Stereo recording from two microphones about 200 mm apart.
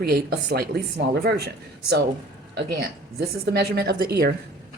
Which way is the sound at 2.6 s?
55° right (ahead or behind).